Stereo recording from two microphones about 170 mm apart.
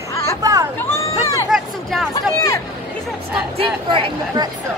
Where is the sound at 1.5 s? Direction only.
Centre (ahead or behind).